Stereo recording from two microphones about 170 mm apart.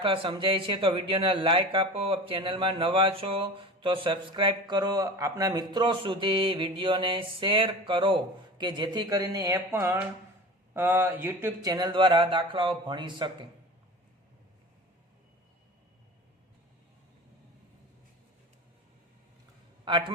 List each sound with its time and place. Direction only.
0.0 s speech: 30° right (ahead or behind); by 11.7 s 10° right (ahead or behind)
11.7 s speech: 25° right (ahead or behind)
19.8 s a man's voice: 30° right (ahead or behind)